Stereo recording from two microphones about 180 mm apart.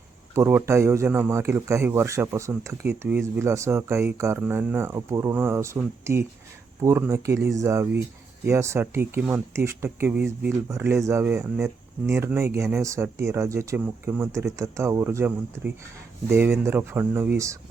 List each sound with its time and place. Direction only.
0.3 s speech: 15° right (ahead or behind)